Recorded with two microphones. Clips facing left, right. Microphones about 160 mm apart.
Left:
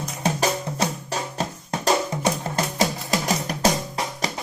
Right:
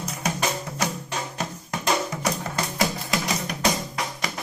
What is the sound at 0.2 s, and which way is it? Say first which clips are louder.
Music: left 5 dB; 30° left (ahead or behind).